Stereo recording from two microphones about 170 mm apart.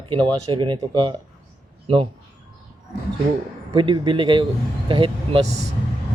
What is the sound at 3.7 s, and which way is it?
Speech, 30° right (ahead or behind).